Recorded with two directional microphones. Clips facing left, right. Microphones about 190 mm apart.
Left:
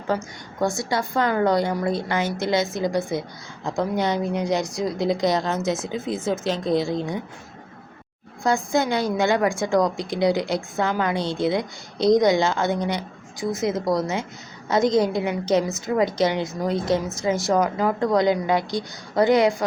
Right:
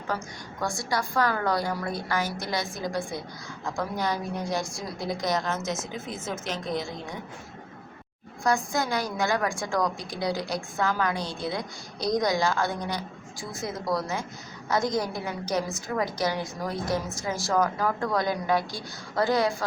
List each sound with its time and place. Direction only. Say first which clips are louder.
0.6 s a woman's voice: left 6 dB; 25° left (ahead or behind)
8.4 s a woman's voice: left 5 dB; 25° left (ahead or behind)